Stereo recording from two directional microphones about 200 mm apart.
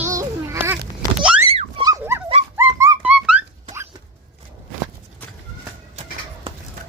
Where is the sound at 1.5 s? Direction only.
30° right (ahead or behind).